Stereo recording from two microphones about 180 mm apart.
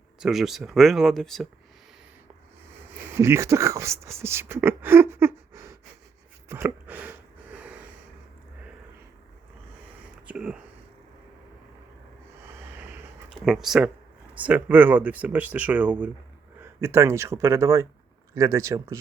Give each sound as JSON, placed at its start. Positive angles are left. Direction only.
{"t": 0.2, "sound": "speech", "side_deg": 0}
{"t": 3.2, "sound": "speech", "side_deg": -15}
{"t": 6.5, "sound": "a sound", "side_deg": -10}
{"t": 7.5, "sound": "snort", "side_deg": -5}
{"t": 10.2, "sound": "speech", "side_deg": -5}
{"t": 12.7, "sound": "a sound", "side_deg": -10}
{"t": 13.4, "sound": "speech", "side_deg": 0}